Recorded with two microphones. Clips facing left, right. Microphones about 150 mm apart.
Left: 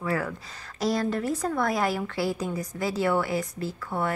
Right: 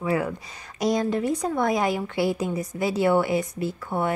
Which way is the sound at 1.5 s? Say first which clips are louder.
Right 2 dB; 20° right (ahead or behind).